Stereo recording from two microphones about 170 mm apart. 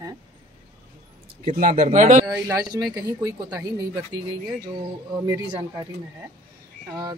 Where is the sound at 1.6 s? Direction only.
50° right (ahead or behind).